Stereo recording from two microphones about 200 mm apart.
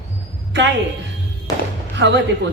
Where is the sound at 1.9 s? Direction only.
60° right (ahead or behind).